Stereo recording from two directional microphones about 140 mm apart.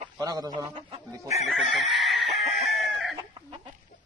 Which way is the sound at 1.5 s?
Centre (ahead or behind).